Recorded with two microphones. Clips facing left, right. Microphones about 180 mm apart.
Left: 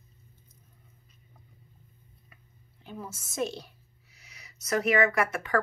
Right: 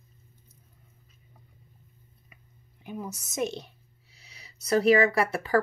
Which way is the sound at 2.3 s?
15° right (ahead or behind).